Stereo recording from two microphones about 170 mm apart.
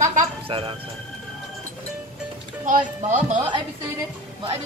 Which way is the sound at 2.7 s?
45° right (ahead or behind).